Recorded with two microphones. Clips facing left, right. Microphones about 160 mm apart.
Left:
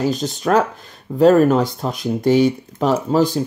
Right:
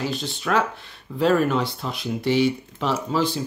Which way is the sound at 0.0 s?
40° left (ahead or behind).